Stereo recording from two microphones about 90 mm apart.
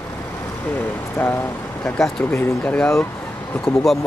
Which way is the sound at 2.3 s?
20° left (ahead or behind).